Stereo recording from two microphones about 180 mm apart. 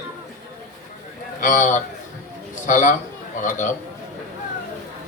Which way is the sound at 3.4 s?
45° left (ahead or behind).